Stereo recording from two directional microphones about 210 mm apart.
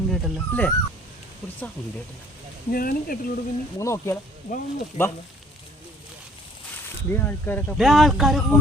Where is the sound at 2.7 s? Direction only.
45° left (ahead or behind).